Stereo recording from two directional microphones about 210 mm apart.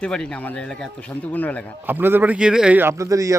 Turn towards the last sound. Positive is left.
turn(degrees=-15)  # may be behind; listen again after turning